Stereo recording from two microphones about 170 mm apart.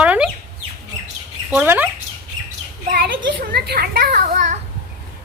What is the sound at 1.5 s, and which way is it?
Speech, 10° right (ahead or behind).